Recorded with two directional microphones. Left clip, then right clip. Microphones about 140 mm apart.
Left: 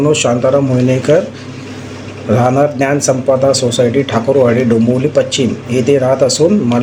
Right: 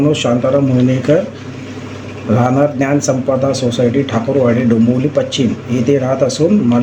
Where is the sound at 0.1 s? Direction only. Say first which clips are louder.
Left 2 dB; 20° left (ahead or behind).